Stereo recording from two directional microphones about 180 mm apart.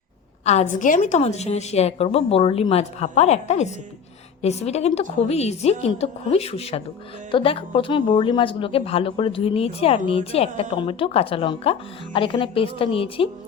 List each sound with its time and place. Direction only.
0.4 s speech: 40° left (ahead or behind)